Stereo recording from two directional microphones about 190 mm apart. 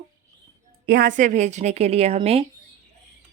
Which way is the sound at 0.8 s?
50° right (ahead or behind).